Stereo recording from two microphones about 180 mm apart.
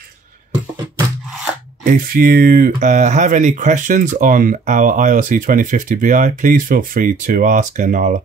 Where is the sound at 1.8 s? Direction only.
50° right (ahead or behind).